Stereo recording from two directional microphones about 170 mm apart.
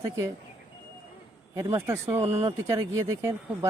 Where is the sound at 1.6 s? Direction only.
15° right (ahead or behind).